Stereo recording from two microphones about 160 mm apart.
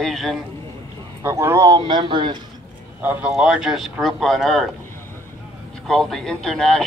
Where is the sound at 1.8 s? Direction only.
30° right (ahead or behind).